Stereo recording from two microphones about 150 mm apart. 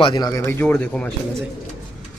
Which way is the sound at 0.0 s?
30° left (ahead or behind).